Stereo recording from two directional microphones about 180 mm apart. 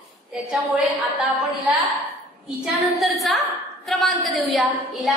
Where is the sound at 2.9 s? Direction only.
Centre (ahead or behind).